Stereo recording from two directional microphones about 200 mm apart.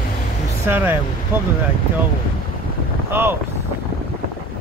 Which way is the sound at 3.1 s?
10° right (ahead or behind).